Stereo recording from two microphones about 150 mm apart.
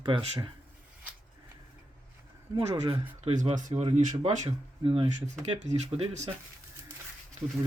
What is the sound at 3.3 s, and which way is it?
Speech, 55° right (ahead or behind).